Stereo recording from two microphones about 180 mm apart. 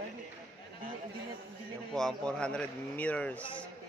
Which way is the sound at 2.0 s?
5° left (ahead or behind).